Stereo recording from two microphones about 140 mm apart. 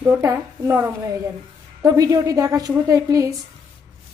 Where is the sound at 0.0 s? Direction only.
20° right (ahead or behind).